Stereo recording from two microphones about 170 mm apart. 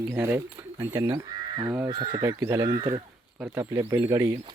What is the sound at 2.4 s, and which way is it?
Speech, 15° right (ahead or behind).